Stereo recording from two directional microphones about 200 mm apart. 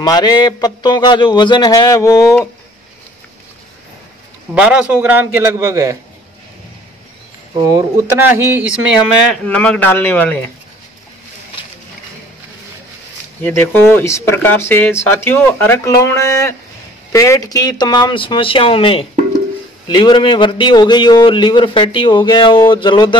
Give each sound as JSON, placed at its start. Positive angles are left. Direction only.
{"t": 0.0, "sound": "a man's voice", "side_deg": 20}
{"t": 4.6, "sound": "a man's voice", "side_deg": -5}
{"t": 7.6, "sound": "a man's voice", "side_deg": -15}
{"t": 9.3, "sound": "speech", "side_deg": 5}
{"t": 13.4, "sound": "a man's voice", "side_deg": 10}